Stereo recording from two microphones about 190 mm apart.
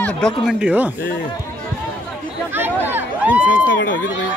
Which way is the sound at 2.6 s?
10° right (ahead or behind).